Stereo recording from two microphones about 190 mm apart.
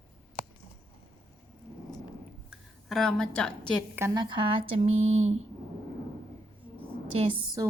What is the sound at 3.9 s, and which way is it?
Speech, 15° right (ahead or behind).